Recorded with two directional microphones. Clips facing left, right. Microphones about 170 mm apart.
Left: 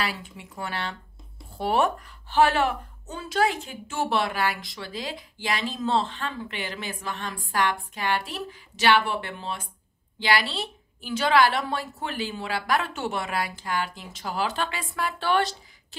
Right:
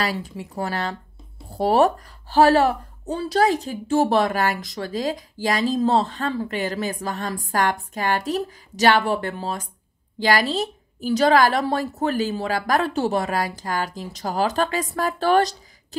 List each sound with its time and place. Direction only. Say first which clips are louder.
0.0 s speech: right 5 dB; 40° right (ahead or behind)